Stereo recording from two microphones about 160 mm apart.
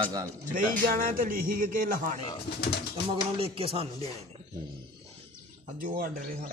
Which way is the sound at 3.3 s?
40° right (ahead or behind).